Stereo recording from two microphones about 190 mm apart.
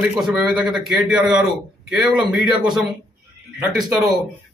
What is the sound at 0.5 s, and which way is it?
A man's voice, centre (ahead or behind).